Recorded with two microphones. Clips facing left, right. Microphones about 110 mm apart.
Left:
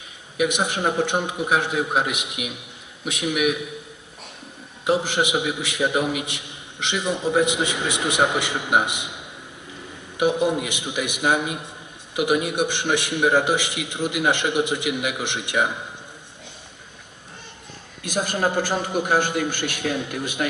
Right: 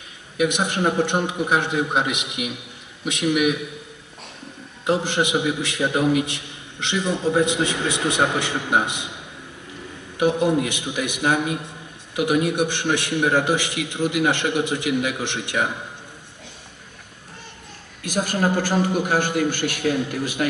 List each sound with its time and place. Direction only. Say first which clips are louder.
0.4 s a man's voice: right 1 dB; 5° left (ahead or behind)
4.8 s a man's voice: even; 5° left (ahead or behind)
10.1 s a man's voice: right 1 dB; 15° left (ahead or behind)
18.0 s a man's voice: right 1 dB; 20° left (ahead or behind)